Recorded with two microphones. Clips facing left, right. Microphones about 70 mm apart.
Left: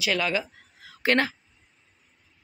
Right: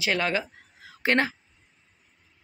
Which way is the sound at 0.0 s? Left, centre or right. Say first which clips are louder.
Even; right.